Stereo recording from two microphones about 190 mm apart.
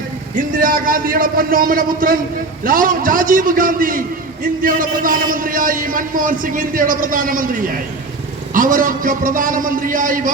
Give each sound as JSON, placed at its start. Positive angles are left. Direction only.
{"t": 0.3, "sound": "a man's voice", "side_deg": -45}
{"t": 8.5, "sound": "a man's voice", "side_deg": -45}